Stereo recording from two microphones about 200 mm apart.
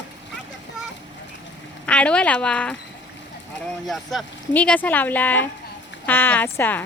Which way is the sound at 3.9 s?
Centre (ahead or behind).